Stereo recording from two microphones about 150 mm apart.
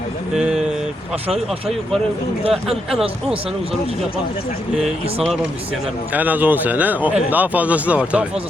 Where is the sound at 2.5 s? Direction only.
Centre (ahead or behind).